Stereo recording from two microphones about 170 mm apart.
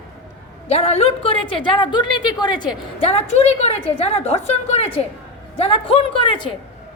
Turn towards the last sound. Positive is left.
turn(degrees=30)  # may be behind; listen again after turning